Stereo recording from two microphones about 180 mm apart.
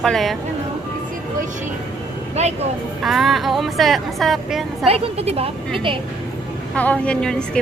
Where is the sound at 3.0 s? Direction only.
Centre (ahead or behind).